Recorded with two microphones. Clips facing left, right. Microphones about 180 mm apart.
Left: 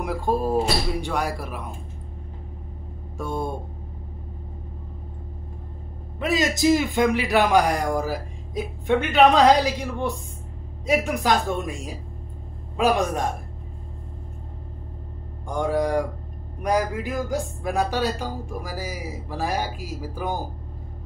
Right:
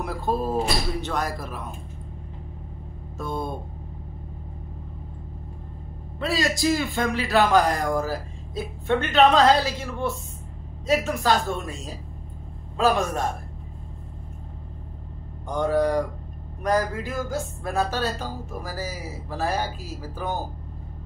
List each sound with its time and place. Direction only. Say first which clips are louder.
0.0 s a man's voice: left 2 dB; 10° left (ahead or behind)
3.2 s a man's voice: left 2 dB; 15° left (ahead or behind)
6.1 s a man's voice: left 2 dB; 20° left (ahead or behind)
15.4 s a man's voice: right 1 dB; 10° left (ahead or behind)